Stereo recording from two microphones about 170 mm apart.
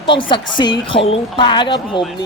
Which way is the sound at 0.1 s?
30° left (ahead or behind).